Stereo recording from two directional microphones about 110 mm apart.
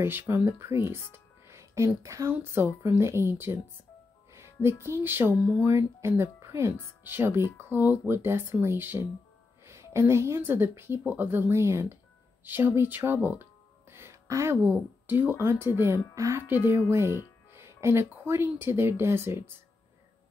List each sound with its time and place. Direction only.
0.0 s a woman's voice: 20° right (ahead or behind)